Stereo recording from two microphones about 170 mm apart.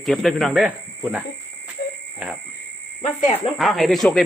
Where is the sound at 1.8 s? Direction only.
70° left (ahead or behind).